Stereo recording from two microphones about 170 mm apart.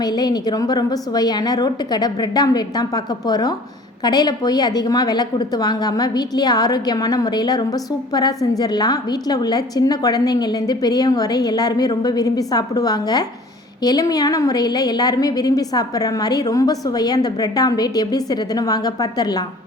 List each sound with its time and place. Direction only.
0.0 s a woman's voice: 25° left (ahead or behind)